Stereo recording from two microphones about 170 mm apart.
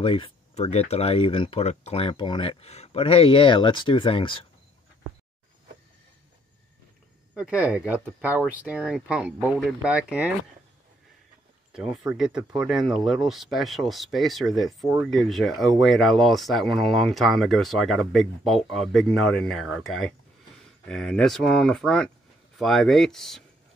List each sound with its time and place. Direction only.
0.0 s speech: 35° left (ahead or behind)
7.3 s speech: 5° right (ahead or behind)
11.7 s speech: 5° right (ahead or behind)